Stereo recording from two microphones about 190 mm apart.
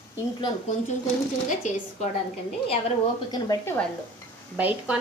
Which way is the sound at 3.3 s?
15° left (ahead or behind).